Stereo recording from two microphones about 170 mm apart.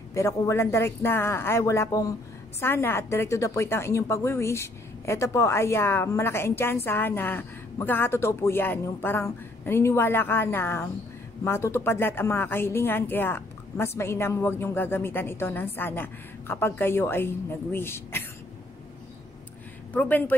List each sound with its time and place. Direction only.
0.1 s a woman's voice: 15° left (ahead or behind)
19.9 s a woman's voice: 10° left (ahead or behind)